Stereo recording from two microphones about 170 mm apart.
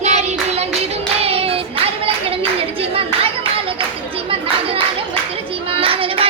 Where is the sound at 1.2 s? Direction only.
35° right (ahead or behind).